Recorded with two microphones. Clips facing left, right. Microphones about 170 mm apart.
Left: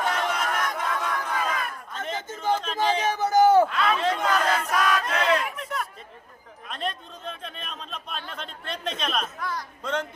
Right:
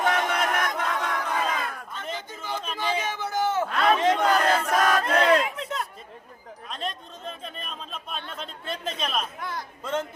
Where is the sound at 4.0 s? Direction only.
25° right (ahead or behind).